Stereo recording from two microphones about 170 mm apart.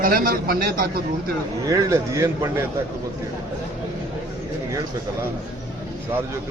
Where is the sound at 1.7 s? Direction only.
20° right (ahead or behind).